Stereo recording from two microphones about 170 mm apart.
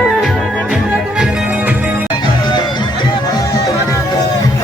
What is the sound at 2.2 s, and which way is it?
Music, 25° left (ahead or behind).